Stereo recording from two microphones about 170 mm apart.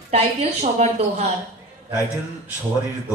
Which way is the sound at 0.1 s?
40° right (ahead or behind).